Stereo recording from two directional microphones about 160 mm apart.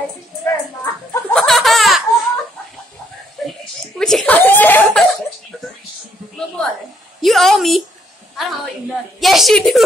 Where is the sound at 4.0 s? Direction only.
5° left (ahead or behind).